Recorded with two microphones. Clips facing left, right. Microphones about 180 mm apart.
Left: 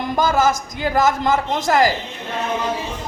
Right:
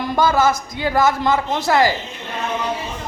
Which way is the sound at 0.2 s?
45° left (ahead or behind).